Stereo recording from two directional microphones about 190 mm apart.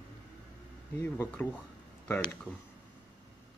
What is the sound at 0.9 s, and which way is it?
Speech, 10° left (ahead or behind).